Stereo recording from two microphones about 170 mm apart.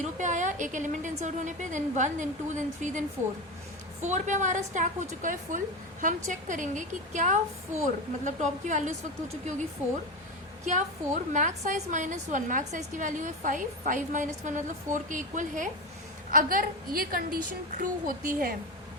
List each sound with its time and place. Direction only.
0.0 s a woman's voice: 45° right (ahead or behind)
4.0 s a woman's voice: 45° right (ahead or behind)
10.7 s a woman's voice: 45° right (ahead or behind)